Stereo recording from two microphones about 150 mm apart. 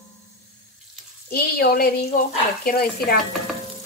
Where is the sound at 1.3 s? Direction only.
80° left.